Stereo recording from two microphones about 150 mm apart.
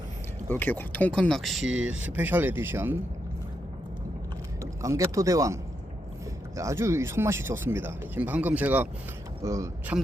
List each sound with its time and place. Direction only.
0.4 s speech: 10° left (ahead or behind); by 3.0 s 15° right (ahead or behind)
4.6 s speech: 20° right (ahead or behind)
6.6 s speech: 20° right (ahead or behind)